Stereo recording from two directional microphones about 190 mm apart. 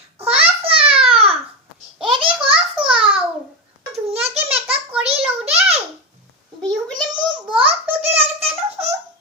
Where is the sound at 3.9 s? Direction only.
35° right (ahead or behind).